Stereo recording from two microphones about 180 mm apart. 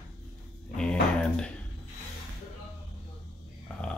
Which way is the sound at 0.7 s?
5° left (ahead or behind).